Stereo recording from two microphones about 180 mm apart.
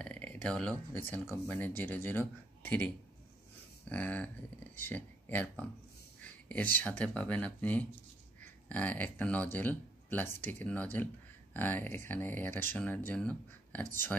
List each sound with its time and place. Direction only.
0.0 s speech: 5° left (ahead or behind)
3.9 s speech: 5° left (ahead or behind)